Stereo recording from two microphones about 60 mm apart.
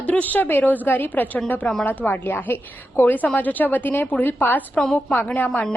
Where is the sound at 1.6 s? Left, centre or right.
Centre.